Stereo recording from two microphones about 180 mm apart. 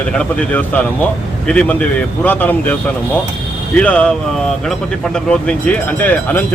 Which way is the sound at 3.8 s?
5° left (ahead or behind).